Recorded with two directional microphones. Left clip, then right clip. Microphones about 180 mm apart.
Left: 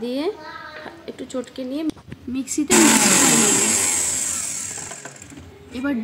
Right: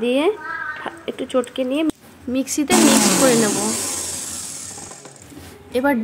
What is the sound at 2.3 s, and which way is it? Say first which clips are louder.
Speech: right 3 dB; 15° right (ahead or behind).